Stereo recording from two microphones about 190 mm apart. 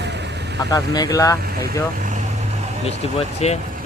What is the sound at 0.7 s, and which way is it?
Speech, 20° left (ahead or behind).